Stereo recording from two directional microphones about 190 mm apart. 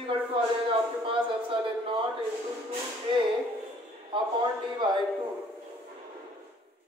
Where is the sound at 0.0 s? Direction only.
30° right (ahead or behind).